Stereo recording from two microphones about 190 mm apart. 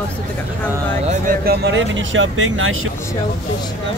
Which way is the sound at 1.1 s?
50° right (ahead or behind).